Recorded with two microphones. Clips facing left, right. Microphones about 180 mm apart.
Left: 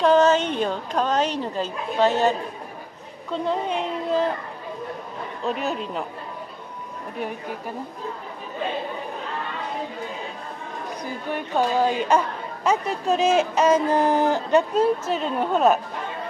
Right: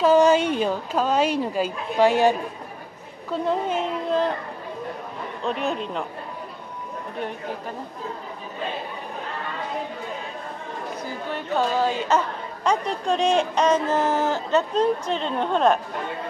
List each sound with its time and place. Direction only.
0.0 s a woman's voice: 10° right (ahead or behind)
5.4 s a woman's voice: centre (ahead or behind)
11.3 s speech: 15° left (ahead or behind)